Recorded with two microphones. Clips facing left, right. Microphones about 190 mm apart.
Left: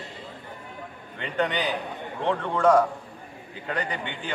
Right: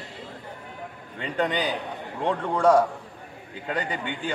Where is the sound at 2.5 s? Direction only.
30° right (ahead or behind).